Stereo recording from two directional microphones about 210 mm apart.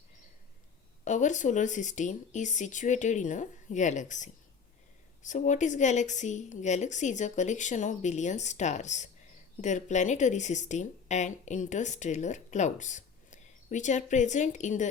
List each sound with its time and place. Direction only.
1.0 s speech: 35° left (ahead or behind)